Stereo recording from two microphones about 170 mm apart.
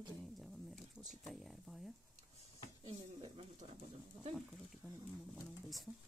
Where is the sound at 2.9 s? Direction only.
35° right (ahead or behind).